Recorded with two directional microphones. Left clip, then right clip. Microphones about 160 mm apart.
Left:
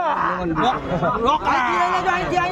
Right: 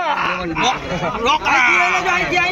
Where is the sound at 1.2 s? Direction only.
55° left (ahead or behind).